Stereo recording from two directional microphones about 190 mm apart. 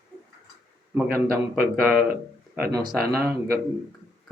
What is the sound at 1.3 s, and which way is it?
Speech, 50° right (ahead or behind).